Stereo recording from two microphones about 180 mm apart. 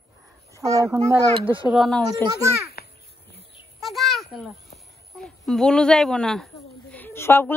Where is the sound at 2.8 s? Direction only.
60° left (ahead or behind).